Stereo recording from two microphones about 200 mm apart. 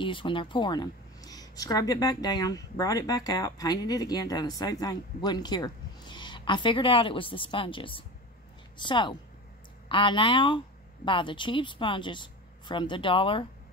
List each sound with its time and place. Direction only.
0.0 s speech: 25° left (ahead or behind)